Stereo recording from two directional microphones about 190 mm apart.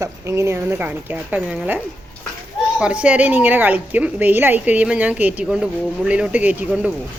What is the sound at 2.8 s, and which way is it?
A child's voice, 5° right (ahead or behind).